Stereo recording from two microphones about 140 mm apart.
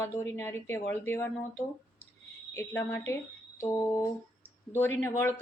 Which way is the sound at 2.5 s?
15° left (ahead or behind).